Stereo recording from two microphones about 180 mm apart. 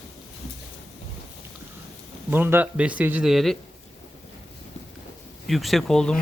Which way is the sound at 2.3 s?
10° right (ahead or behind).